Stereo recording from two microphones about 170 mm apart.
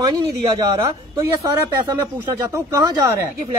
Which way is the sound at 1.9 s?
15° right (ahead or behind).